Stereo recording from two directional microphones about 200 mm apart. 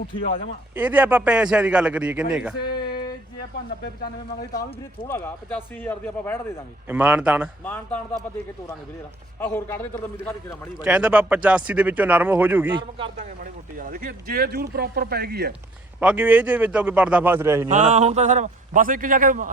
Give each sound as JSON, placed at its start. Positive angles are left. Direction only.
{"t": 0.8, "sound": "a man's voice", "side_deg": -10}
{"t": 5.0, "sound": "speech", "side_deg": 10}
{"t": 6.8, "sound": "speech", "side_deg": -10}
{"t": 7.6, "sound": "speech", "side_deg": 10}
{"t": 9.4, "sound": "speech", "side_deg": 10}
{"t": 10.8, "sound": "speech", "side_deg": -5}
{"t": 13.4, "sound": "speech", "side_deg": -45}
{"t": 16.0, "sound": "speech", "side_deg": -10}
{"t": 17.7, "sound": "a man's voice", "side_deg": -35}